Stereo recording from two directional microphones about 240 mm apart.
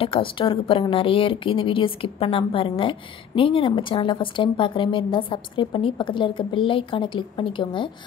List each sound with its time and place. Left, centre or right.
0.0 s speech: left